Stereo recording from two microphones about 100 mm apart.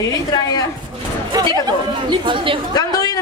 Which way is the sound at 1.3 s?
45° right (ahead or behind).